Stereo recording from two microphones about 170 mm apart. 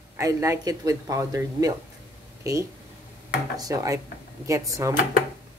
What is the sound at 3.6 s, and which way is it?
Speech, 20° right (ahead or behind).